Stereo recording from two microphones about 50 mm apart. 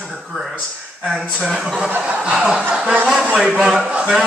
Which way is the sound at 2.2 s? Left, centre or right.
Centre.